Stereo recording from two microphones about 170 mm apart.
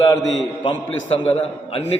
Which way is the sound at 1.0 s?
35° left (ahead or behind).